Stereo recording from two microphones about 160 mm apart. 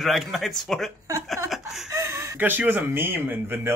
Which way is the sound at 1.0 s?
15° right (ahead or behind).